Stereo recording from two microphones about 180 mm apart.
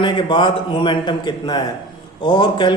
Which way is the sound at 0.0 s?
25° left (ahead or behind).